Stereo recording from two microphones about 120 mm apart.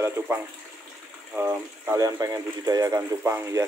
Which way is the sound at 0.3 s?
20° right (ahead or behind).